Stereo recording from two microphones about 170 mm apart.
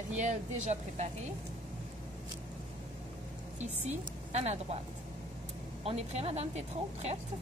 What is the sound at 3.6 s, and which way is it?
Speech, 40° right (ahead or behind).